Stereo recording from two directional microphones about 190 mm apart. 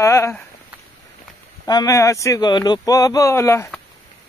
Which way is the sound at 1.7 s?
20° left (ahead or behind).